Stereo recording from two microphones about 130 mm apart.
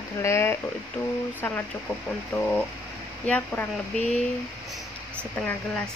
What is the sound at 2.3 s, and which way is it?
A woman's voice, 5° left (ahead or behind).